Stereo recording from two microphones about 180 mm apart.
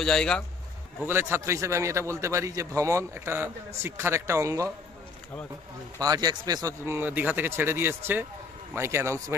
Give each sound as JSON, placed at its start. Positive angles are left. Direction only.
{"t": 0.0, "sound": "speech", "side_deg": 5}
{"t": 0.9, "sound": "a man's voice", "side_deg": -10}
{"t": 6.0, "sound": "a man's voice", "side_deg": -20}